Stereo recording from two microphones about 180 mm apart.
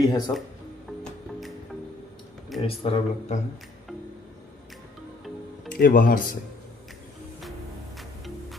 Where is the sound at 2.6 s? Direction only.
30° left (ahead or behind).